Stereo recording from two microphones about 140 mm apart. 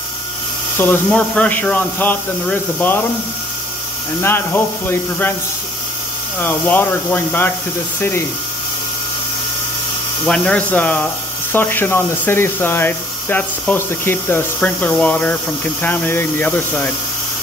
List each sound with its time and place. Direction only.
0.7 s speech: 15° left (ahead or behind)
4.2 s speech: 15° left (ahead or behind)
6.4 s speech: 15° left (ahead or behind)
10.2 s speech: 5° left (ahead or behind)